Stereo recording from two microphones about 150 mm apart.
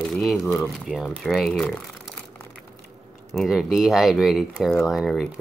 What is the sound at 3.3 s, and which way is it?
Speech, centre (ahead or behind).